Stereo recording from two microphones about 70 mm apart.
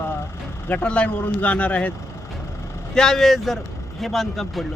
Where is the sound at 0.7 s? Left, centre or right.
Centre.